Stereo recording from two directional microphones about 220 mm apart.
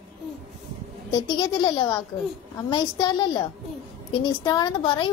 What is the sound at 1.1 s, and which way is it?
A woman's voice, 20° left (ahead or behind).